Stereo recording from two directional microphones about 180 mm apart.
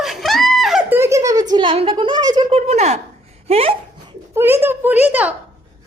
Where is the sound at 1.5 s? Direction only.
25° right (ahead or behind).